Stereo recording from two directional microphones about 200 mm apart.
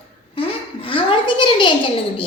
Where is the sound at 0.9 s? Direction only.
25° left (ahead or behind).